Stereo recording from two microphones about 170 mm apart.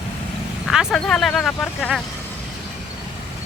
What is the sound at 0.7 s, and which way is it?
Speech, centre (ahead or behind).